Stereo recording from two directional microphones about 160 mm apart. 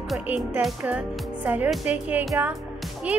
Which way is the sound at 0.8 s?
10° right (ahead or behind).